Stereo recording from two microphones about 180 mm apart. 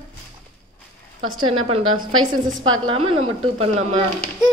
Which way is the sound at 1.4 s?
30° right (ahead or behind).